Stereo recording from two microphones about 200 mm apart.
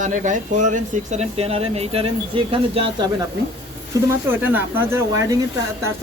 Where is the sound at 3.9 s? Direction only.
15° right (ahead or behind).